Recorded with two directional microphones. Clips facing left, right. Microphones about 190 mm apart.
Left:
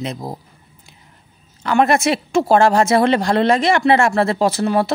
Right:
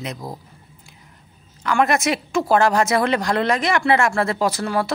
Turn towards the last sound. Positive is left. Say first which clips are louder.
# left 4 dB
turn(degrees=25)  # may be behind; listen again after turning